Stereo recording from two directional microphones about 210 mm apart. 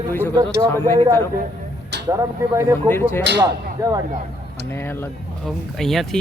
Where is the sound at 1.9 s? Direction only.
55° right (ahead or behind).